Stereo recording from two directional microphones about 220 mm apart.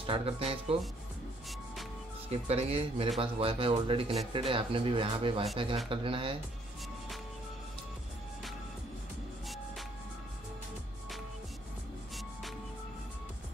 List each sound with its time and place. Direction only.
0.0 s speech: 25° right (ahead or behind)
2.2 s speech: 30° right (ahead or behind)